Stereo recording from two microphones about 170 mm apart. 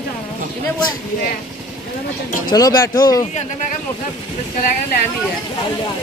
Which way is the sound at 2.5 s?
25° left (ahead or behind).